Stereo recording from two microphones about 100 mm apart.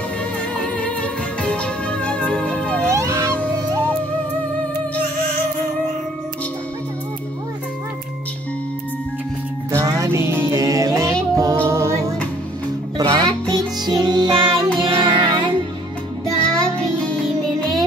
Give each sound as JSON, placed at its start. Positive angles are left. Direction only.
{"t": 0.7, "sound": "music", "side_deg": 10}
{"t": 2.9, "sound": "cat", "side_deg": -30}
{"t": 9.7, "sound": "music", "side_deg": -30}
{"t": 11.6, "sound": "a capella", "side_deg": -30}
{"t": 12.9, "sound": "music", "side_deg": -40}
{"t": 16.4, "sound": "music", "side_deg": 10}